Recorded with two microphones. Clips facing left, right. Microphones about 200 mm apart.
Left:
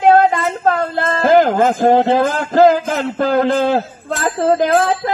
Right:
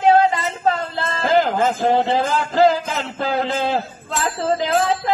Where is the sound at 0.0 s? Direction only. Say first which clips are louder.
Left 4 dB; 55° left (ahead or behind).